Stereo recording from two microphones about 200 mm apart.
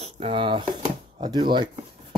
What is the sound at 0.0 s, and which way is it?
Speech, 25° right (ahead or behind).